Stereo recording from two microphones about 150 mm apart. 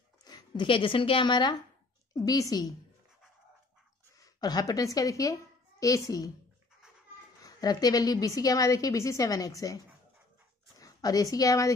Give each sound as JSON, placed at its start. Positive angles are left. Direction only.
{"t": 0.2, "sound": "a woman's voice", "side_deg": 30}
{"t": 4.2, "sound": "a woman's voice", "side_deg": 25}
{"t": 7.3, "sound": "a woman's voice", "side_deg": 25}
{"t": 10.8, "sound": "a woman's voice", "side_deg": 25}